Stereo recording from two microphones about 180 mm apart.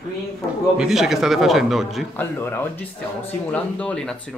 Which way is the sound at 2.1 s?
10° left (ahead or behind).